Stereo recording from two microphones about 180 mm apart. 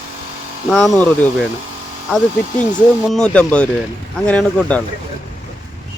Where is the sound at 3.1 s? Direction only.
5° left (ahead or behind).